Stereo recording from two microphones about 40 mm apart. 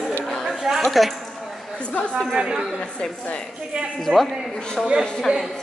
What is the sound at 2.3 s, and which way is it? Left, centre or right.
Speech, centre.